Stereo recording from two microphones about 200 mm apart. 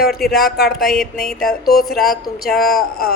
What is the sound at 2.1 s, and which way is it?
A woman's voice, 50° left (ahead or behind).